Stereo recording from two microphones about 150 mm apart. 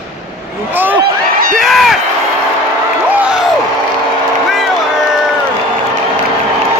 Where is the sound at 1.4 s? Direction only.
70° right (ahead or behind).